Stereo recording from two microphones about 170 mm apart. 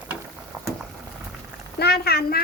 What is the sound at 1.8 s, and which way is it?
Speech, 70° left (ahead or behind).